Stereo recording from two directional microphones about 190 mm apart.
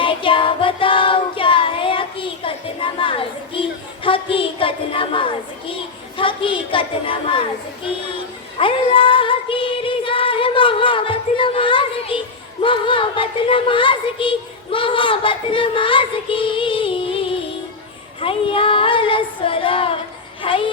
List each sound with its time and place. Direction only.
0.0 s child singing: 25° left (ahead or behind)
6.1 s a woman's voice: 25° left (ahead or behind)
8.5 s music: 30° left (ahead or behind)
12.6 s a sound: 25° left (ahead or behind)
18.2 s female singing: 30° left (ahead or behind)
20.4 s music: 25° left (ahead or behind)